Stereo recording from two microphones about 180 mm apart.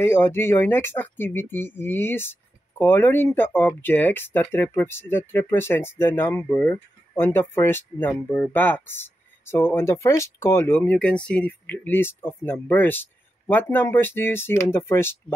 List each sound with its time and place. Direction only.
0.0 s speech: 15° left (ahead or behind)